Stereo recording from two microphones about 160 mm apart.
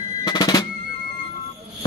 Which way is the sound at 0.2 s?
25° left (ahead or behind).